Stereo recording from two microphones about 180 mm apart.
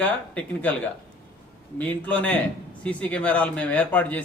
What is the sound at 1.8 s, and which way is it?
A man's voice, 10° left (ahead or behind).